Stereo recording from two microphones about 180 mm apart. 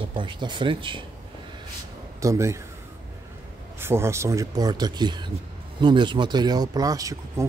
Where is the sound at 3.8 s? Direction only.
15° right (ahead or behind).